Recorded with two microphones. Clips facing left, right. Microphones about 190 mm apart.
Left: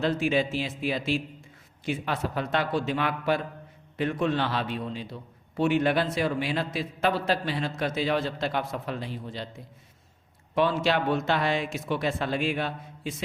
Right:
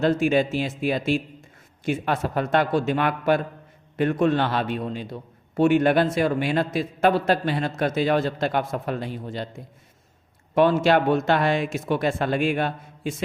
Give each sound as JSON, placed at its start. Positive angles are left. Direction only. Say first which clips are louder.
{"t": 0.0, "sound": "a man's voice", "louder": "right 5 dB", "side_deg": -45}